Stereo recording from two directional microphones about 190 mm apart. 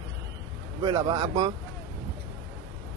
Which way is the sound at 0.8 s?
20° right (ahead or behind).